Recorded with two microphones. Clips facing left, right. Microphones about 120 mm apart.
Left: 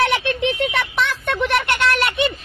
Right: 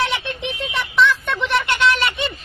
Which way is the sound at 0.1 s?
70° left (ahead or behind).